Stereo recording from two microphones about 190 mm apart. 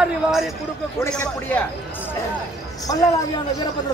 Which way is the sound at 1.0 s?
10° left (ahead or behind).